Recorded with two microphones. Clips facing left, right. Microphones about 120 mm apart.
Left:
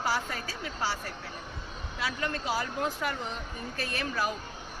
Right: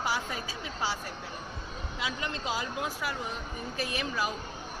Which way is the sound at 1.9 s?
20° right (ahead or behind).